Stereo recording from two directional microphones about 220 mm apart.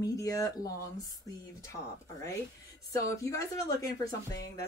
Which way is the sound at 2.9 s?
15° left (ahead or behind).